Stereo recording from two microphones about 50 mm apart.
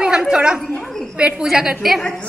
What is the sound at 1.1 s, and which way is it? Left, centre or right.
Speech, centre.